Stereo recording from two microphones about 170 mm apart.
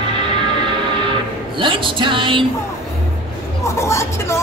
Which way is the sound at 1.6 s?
30° right (ahead or behind).